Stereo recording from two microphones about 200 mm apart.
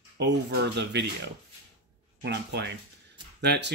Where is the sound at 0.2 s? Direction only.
60° right (ahead or behind).